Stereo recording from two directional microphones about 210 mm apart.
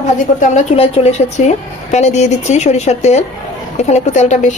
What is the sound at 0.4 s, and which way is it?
A woman's voice, 30° left (ahead or behind).